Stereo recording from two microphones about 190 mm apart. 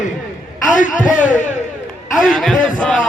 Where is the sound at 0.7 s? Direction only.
45° left (ahead or behind).